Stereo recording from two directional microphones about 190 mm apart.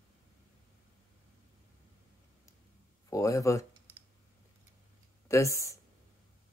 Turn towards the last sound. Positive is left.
turn(degrees=15)  # may be behind; listen again after turning